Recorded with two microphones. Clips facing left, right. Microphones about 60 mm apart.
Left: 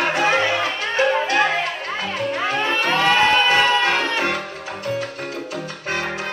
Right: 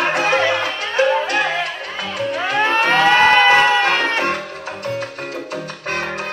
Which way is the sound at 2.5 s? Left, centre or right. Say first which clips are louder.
Right 7 dB; right.